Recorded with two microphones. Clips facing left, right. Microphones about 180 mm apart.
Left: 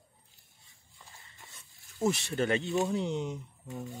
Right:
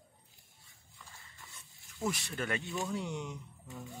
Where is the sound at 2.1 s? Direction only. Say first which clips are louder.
Left 7 dB; 25° left (ahead or behind).